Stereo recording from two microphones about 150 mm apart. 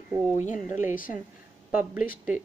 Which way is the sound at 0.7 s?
60° left (ahead or behind).